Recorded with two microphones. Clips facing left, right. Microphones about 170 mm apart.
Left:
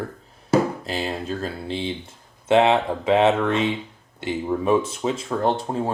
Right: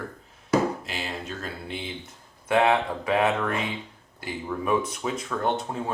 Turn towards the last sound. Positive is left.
turn(degrees=35)  # may be behind; listen again after turning